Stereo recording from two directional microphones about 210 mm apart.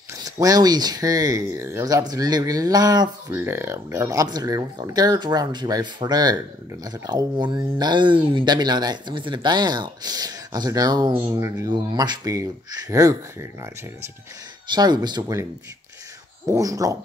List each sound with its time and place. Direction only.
0.2 s speech: 15° right (ahead or behind)
14.7 s speech: 20° right (ahead or behind)
16.4 s speech: 15° right (ahead or behind)